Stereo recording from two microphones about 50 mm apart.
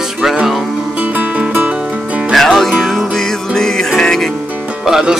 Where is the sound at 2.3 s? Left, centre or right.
Centre.